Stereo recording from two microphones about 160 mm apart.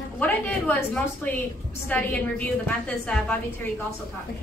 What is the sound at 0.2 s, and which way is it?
A woman's voice, 10° left (ahead or behind).